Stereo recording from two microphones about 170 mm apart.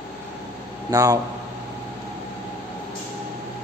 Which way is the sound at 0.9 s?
20° right (ahead or behind).